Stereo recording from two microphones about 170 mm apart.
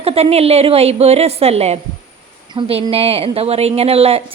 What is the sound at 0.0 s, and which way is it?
Speech, 35° right (ahead or behind).